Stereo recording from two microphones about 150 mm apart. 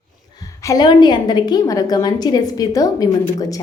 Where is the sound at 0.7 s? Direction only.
30° left (ahead or behind).